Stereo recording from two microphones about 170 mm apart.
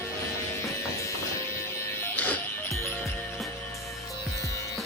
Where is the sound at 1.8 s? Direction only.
15° left (ahead or behind).